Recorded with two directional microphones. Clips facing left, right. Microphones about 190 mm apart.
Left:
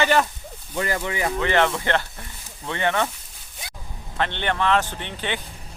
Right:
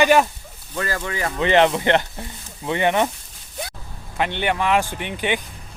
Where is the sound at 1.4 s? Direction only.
20° right (ahead or behind).